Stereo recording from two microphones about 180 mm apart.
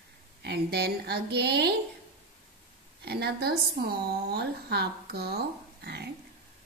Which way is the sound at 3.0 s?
65° right (ahead or behind).